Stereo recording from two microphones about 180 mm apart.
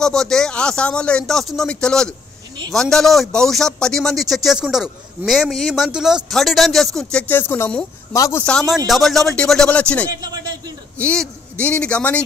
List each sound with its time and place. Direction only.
0.0 s a man's voice: 5° left (ahead or behind)
10.0 s a man's voice: 20° right (ahead or behind)
11.0 s a man's voice: 5° left (ahead or behind)